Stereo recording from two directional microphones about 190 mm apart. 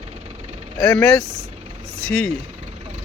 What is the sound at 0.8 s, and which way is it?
Speech, 5° left (ahead or behind).